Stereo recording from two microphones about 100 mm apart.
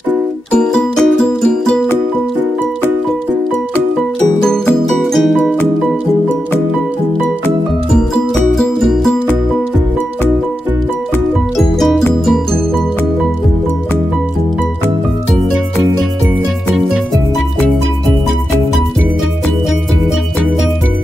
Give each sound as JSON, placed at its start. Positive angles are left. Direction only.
{"t": 0.5, "sound": "music", "side_deg": 10}
{"t": 4.8, "sound": "music", "side_deg": 0}
{"t": 5.4, "sound": "music", "side_deg": 15}
{"t": 8.5, "sound": "music", "side_deg": 5}